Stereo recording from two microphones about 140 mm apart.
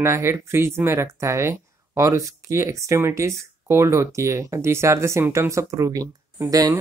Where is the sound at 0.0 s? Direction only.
20° right (ahead or behind).